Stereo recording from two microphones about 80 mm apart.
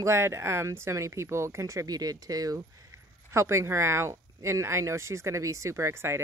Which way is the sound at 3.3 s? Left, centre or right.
Right.